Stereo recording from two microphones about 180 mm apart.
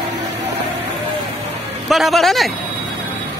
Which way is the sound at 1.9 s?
Centre (ahead or behind).